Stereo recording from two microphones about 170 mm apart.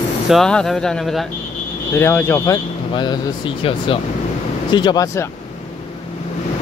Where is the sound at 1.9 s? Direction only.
15° left (ahead or behind).